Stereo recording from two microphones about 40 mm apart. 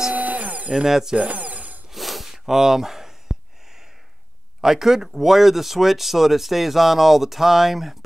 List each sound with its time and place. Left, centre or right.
0.1 s tools: right
0.8 s speech: centre
1.1 s tools: right
1.9 s a sound: centre
4.6 s speech: centre